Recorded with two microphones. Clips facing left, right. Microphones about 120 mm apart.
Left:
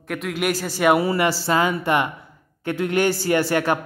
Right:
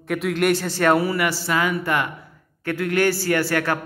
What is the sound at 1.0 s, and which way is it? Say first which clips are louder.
A man's voice: left 2 dB; 25° left (ahead or behind).